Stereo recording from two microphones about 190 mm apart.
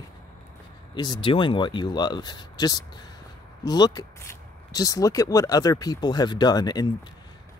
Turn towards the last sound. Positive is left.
turn(degrees=20)  # may be behind; listen again after turning